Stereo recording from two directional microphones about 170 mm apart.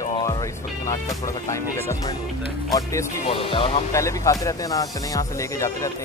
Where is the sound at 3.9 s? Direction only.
20° left (ahead or behind).